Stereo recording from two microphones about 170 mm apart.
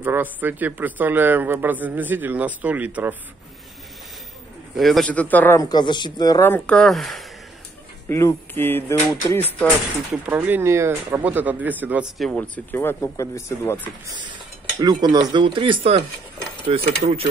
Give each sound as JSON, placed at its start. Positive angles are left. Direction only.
{"t": 0.0, "sound": "speech", "side_deg": -10}
{"t": 4.7, "sound": "speech", "side_deg": 0}
{"t": 5.6, "sound": "speech", "side_deg": 25}
{"t": 8.1, "sound": "speech", "side_deg": 15}
{"t": 10.1, "sound": "speech", "side_deg": -10}
{"t": 14.8, "sound": "speech", "side_deg": -25}